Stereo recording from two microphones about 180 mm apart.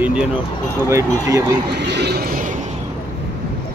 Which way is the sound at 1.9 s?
65° right (ahead or behind).